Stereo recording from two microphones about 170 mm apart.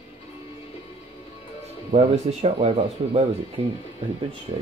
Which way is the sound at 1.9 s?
40° right (ahead or behind).